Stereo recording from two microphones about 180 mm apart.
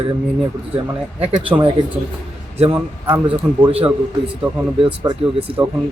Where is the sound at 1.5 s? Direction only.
15° right (ahead or behind).